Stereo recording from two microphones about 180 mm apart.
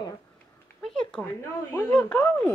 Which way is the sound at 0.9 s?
Centre (ahead or behind).